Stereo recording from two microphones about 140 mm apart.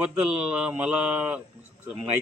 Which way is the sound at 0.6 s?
5° right (ahead or behind).